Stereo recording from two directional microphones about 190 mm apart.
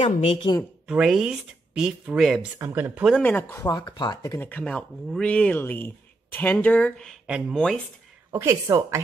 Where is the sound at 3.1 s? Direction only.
10° left (ahead or behind).